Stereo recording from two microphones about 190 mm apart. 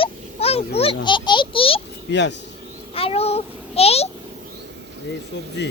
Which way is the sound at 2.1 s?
70° left (ahead or behind).